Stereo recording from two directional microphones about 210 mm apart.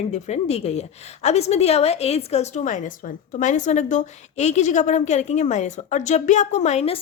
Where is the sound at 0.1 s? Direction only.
30° left (ahead or behind).